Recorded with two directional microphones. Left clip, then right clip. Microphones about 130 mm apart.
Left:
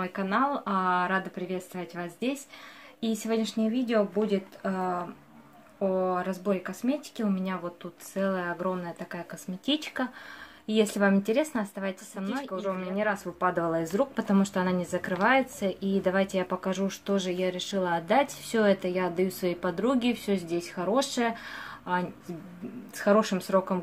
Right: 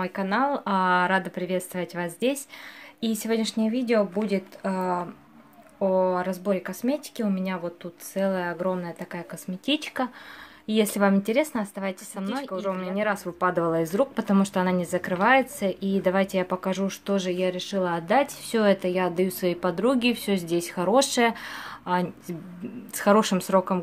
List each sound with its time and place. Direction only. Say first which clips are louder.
0.0 s speech: right 2 dB; 30° right (ahead or behind); by 2.3 s 45° right (ahead or behind)
3.0 s speech: right 3 dB; 35° right (ahead or behind)
22.9 s speech: right 3 dB; 55° right (ahead or behind)